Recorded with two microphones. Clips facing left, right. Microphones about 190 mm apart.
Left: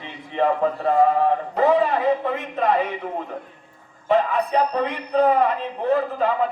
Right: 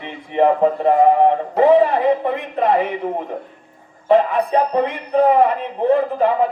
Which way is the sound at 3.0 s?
25° right (ahead or behind).